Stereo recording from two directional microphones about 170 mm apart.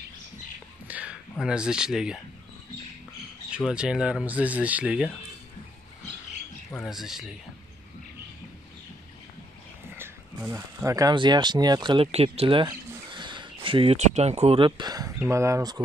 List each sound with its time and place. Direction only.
0.8 s a sound: 10° right (ahead or behind)
1.3 s speech: 5° right (ahead or behind)
3.5 s speech: 5° right (ahead or behind)
6.7 s speech: centre (ahead or behind)
9.9 s speech: 15° right (ahead or behind); by 13.9 s 30° right (ahead or behind)
13.9 s speech: 40° right (ahead or behind); by 15.8 s 20° right (ahead or behind)